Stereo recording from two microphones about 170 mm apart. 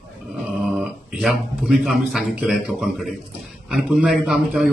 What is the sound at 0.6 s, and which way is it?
A man's voice, 5° right (ahead or behind).